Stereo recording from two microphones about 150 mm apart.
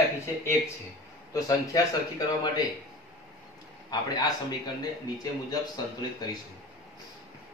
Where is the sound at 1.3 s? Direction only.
25° left (ahead or behind).